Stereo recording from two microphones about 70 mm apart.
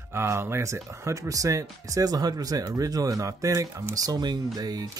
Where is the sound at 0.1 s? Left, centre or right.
Right.